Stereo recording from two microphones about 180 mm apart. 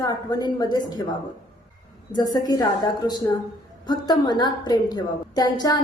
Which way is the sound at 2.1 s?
20° left (ahead or behind).